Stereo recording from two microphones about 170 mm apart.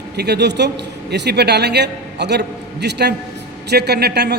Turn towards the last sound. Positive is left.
turn(degrees=-70)  # may be behind; listen again after turning